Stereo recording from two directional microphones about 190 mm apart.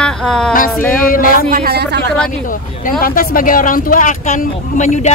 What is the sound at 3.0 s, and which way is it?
Speech, 50° left (ahead or behind).